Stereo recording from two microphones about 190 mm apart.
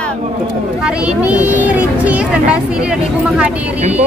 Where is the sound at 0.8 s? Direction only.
5° right (ahead or behind).